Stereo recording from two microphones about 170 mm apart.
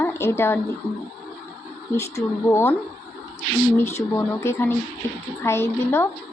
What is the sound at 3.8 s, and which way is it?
Speech, 15° left (ahead or behind).